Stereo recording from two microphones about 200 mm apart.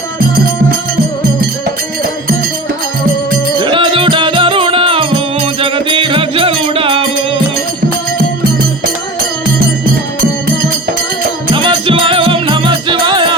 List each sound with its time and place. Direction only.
3.6 s music: 25° right (ahead or behind)
11.5 s music: 25° right (ahead or behind)